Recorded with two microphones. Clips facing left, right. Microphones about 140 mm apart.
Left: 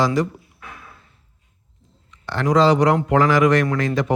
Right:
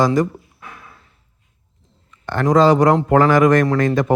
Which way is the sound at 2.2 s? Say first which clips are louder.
Right 3 dB; 50° right (ahead or behind).